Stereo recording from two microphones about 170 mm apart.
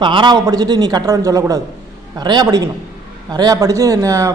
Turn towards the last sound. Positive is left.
turn(degrees=-20)  # may be behind; listen again after turning